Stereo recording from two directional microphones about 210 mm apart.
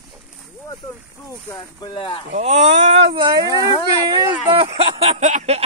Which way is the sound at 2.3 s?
30° right (ahead or behind).